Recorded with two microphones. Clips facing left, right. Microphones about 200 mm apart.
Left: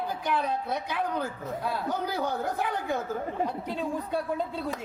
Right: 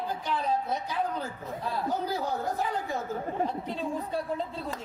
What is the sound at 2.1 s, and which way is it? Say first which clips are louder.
Speech: left 1 dB; 65° left (ahead or behind).